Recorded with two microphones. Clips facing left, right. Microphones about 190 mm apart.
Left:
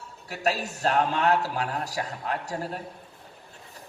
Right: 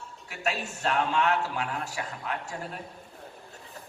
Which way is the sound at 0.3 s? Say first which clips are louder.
Left 4 dB; 35° left (ahead or behind).